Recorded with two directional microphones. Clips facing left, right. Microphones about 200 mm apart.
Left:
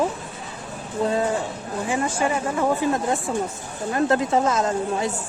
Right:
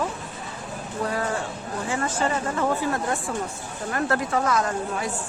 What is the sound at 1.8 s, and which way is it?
A woman's voice, 15° left (ahead or behind).